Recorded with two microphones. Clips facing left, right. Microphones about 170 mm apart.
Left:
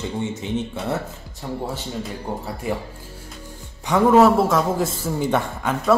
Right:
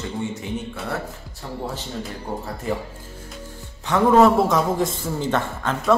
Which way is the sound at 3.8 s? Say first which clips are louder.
Left 1 dB; 10° left (ahead or behind).